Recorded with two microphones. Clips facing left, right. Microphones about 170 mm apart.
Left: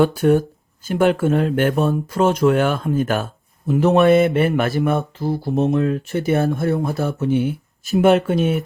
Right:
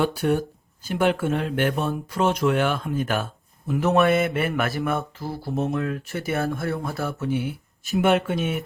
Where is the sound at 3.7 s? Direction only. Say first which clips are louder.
Left 6 dB; 25° left (ahead or behind).